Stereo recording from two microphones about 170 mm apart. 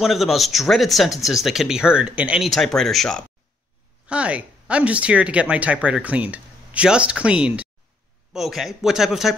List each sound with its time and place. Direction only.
0.0 s speech: centre (ahead or behind)